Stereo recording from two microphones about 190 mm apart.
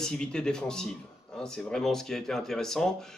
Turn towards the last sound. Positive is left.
turn(degrees=0)  # may be behind; listen again after turning